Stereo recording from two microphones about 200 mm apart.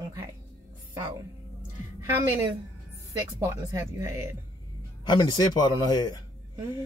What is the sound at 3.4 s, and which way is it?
Speech, 15° right (ahead or behind).